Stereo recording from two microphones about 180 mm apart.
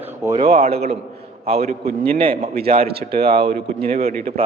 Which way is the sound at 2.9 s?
60° right (ahead or behind).